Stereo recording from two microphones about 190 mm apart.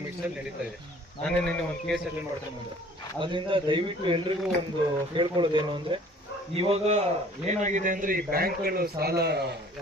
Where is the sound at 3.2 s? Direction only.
25° right (ahead or behind); by 9.4 s 60° right (ahead or behind).